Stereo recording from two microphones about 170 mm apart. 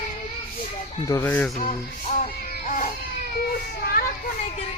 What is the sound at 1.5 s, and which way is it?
Music, 40° left (ahead or behind).